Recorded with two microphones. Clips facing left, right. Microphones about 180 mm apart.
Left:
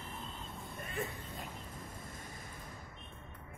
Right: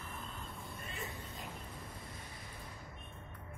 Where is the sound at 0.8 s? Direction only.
55° left (ahead or behind).